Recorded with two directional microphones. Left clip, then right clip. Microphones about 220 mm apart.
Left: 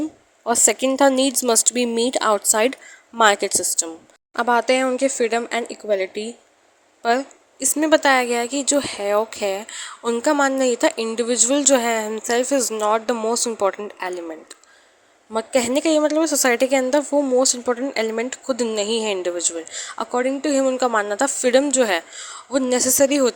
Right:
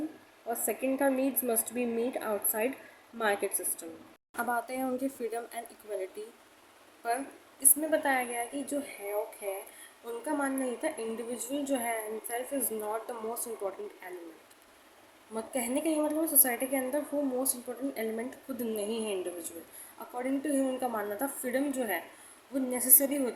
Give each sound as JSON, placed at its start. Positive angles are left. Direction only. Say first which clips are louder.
{"t": 0.4, "sound": "speech", "louder": "left 14 dB", "side_deg": 45}
{"t": 7.6, "sound": "speech", "louder": "left 13 dB", "side_deg": 40}
{"t": 10.0, "sound": "speech", "louder": "left 15 dB", "side_deg": 45}
{"t": 15.3, "sound": "speech", "louder": "left 14 dB", "side_deg": 40}